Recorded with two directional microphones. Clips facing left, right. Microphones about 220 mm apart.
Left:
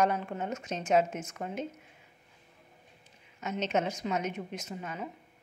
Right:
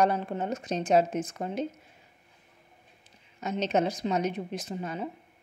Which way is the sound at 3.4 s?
35° right (ahead or behind).